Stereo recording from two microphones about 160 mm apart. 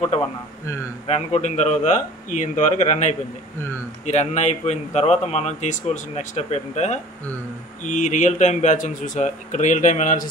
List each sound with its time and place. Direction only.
1.0 s speech: 40° left (ahead or behind)